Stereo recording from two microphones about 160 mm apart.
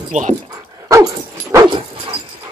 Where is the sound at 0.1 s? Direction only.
45° right (ahead or behind).